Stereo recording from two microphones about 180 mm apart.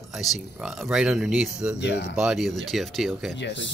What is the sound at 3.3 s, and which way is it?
Speech, 80° left.